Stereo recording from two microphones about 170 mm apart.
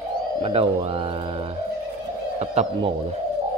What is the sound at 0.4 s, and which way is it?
Speech, 35° right (ahead or behind).